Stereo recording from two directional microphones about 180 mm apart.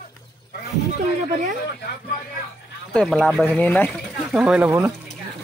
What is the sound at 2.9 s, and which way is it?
Speech, 5° left (ahead or behind).